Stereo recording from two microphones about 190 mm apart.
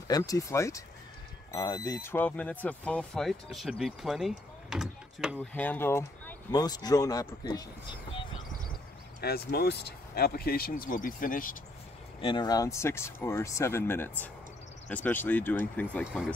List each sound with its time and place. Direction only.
0.1 s speech: 15° left (ahead or behind); by 5.4 s 5° right (ahead or behind)
5.4 s speech: 10° left (ahead or behind); by 8.3 s 25° left (ahead or behind)
9.2 s speech: 55° left (ahead or behind)
12.2 s speech: 25° left (ahead or behind); by 16.1 s 10° left (ahead or behind)